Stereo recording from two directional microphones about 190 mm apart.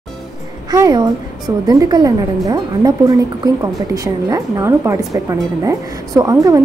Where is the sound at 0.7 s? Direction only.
20° right (ahead or behind).